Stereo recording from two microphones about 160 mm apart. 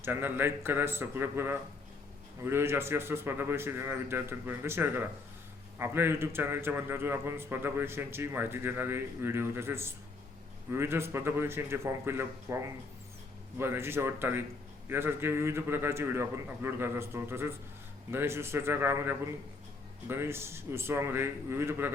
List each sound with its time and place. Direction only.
0.0 s a man's voice: 15° right (ahead or behind)